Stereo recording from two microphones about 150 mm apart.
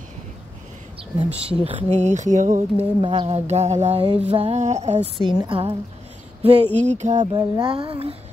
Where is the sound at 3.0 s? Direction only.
35° right (ahead or behind).